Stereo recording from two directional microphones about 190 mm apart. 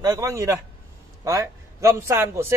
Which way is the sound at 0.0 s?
15° right (ahead or behind).